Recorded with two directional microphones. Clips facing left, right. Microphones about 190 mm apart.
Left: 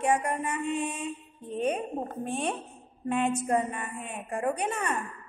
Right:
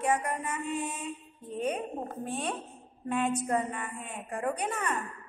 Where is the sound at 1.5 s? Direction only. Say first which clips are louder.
Left 3 dB; 65° left (ahead or behind).